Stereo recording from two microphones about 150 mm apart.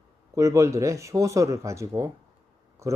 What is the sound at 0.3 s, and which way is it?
Speech, 20° right (ahead or behind).